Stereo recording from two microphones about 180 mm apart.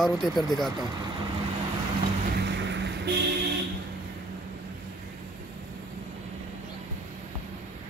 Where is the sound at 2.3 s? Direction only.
75° right (ahead or behind).